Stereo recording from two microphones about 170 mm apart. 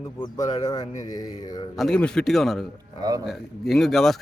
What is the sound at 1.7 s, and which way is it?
Speech, centre (ahead or behind).